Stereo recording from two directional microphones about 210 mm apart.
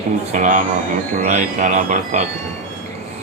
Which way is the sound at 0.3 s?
35° right (ahead or behind).